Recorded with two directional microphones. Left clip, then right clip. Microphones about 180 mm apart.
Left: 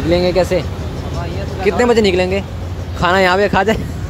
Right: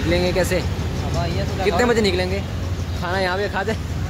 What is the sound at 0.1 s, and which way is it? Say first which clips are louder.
Speech: left 6 dB; 20° left (ahead or behind).